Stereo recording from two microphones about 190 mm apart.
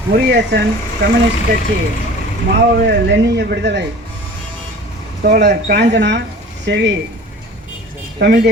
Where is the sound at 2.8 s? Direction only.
65° right (ahead or behind).